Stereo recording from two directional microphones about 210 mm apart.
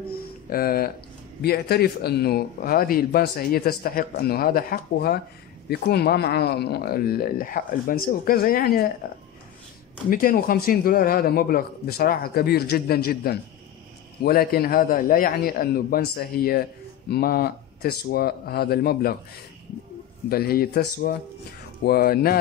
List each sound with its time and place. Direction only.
0.5 s speech: 45° left (ahead or behind)
20.2 s speech: 45° left (ahead or behind)